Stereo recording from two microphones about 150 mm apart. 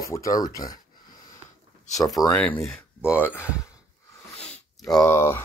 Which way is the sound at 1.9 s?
25° left (ahead or behind).